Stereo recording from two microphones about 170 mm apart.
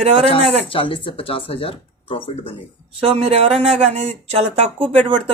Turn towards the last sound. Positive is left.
turn(degrees=-35)  # may be behind; listen again after turning